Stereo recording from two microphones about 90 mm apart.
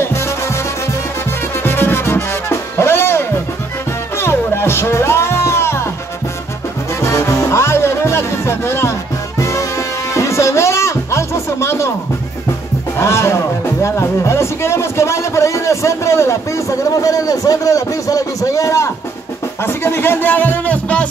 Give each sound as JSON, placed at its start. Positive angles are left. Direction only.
{"t": 0.0, "sound": "music", "side_deg": 30}
{"t": 1.6, "sound": "music", "side_deg": 25}
{"t": 7.1, "sound": "music", "side_deg": 35}
{"t": 12.9, "sound": "a man's voice", "side_deg": 30}